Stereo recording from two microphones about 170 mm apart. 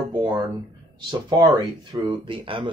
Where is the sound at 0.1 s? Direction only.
25° right (ahead or behind).